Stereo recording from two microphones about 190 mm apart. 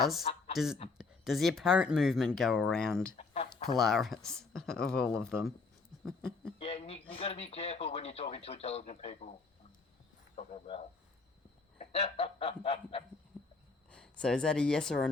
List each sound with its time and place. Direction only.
0.5 s speech: centre (ahead or behind)
3.2 s chicken: 30° left (ahead or behind)
3.8 s speech: centre (ahead or behind)
6.6 s speech: 30° left (ahead or behind)
10.3 s speech: 30° left (ahead or behind)
13.3 s a sound: 5° left (ahead or behind)
13.9 s speech: 5° left (ahead or behind)